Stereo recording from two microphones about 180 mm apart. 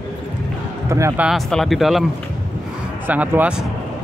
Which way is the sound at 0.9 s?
15° right (ahead or behind).